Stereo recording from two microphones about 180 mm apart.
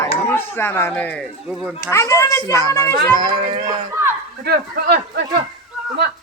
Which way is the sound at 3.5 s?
25° right (ahead or behind).